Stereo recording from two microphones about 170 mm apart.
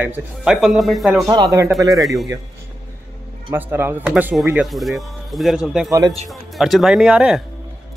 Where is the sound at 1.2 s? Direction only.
20° right (ahead or behind).